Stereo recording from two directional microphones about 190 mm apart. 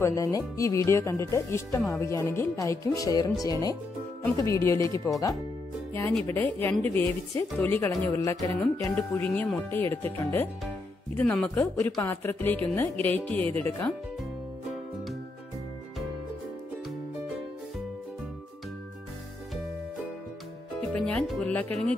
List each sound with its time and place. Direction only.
0.0 s speech: 15° left (ahead or behind)
4.4 s speech: 15° left (ahead or behind)
6.2 s speech: 10° left (ahead or behind)
8.5 s a woman's voice: 5° left (ahead or behind)
20.9 s music: 5° left (ahead or behind)